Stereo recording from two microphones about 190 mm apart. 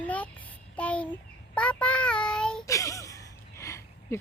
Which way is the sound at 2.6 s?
15° left (ahead or behind).